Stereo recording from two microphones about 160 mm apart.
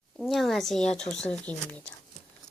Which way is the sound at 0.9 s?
5° left (ahead or behind).